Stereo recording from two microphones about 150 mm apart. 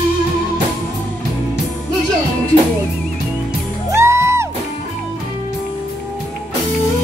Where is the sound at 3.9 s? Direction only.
20° right (ahead or behind).